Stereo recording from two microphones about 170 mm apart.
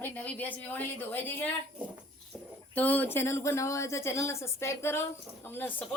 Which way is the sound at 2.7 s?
10° left (ahead or behind).